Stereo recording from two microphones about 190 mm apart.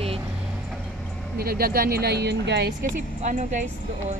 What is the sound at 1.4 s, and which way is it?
Speech, 50° right (ahead or behind).